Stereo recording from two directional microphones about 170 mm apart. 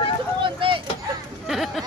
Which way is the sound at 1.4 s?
Centre (ahead or behind).